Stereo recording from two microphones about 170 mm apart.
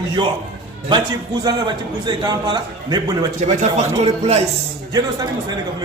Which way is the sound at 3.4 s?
45° right (ahead or behind).